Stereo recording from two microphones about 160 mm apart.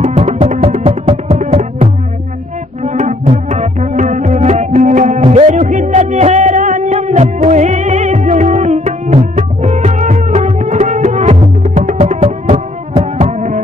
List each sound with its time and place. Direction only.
0.1 s music: 40° right (ahead or behind)
0.8 s music: 35° right (ahead or behind)
1.4 s music: 55° right (ahead or behind)
2.8 s music: 50° right (ahead or behind)
12.2 s music: 35° right (ahead or behind)
13.2 s music: 50° right (ahead or behind)